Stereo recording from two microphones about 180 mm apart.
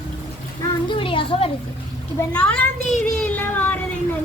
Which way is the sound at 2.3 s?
5° left (ahead or behind).